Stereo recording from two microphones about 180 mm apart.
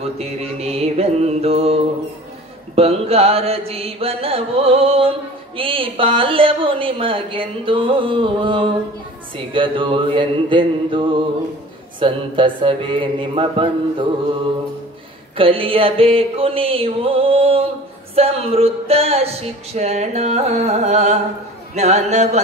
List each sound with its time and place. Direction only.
0.2 s music: 35° right (ahead or behind)
5.6 s speech: 30° right (ahead or behind)
15.3 s music: 30° right (ahead or behind)